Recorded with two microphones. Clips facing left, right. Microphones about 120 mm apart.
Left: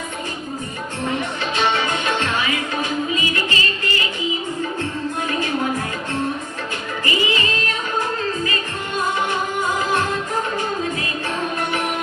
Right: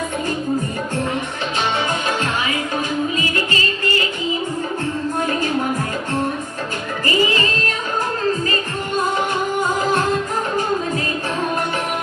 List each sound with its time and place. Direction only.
7.0 s music: 40° right (ahead or behind)